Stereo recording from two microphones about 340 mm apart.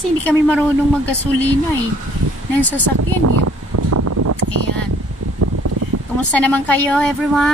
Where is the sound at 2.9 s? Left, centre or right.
Right.